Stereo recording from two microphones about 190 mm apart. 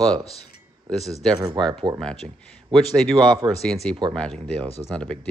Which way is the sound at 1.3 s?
30° right (ahead or behind).